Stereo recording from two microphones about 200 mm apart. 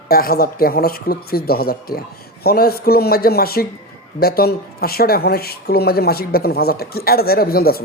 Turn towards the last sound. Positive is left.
turn(degrees=50)  # may be behind; listen again after turning